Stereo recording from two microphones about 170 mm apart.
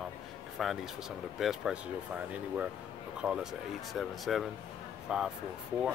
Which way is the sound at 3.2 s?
5° right (ahead or behind).